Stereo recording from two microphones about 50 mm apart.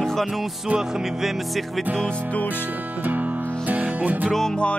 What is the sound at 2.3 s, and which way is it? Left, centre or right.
Music, left.